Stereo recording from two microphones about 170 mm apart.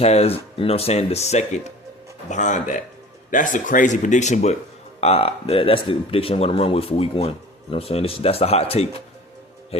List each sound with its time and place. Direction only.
0.0 s speech: 40° left (ahead or behind)